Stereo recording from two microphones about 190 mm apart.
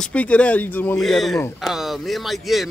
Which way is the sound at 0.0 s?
5° left (ahead or behind).